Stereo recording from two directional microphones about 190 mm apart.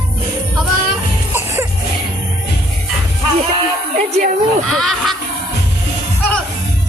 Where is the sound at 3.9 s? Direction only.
40° right (ahead or behind).